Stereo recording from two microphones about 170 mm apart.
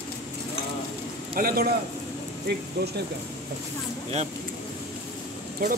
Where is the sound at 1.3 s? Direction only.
60° right (ahead or behind).